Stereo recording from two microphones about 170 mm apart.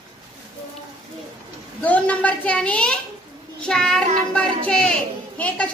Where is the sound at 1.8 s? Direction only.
10° left (ahead or behind).